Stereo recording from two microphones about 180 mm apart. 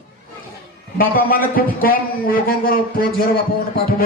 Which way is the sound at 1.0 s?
55° left (ahead or behind).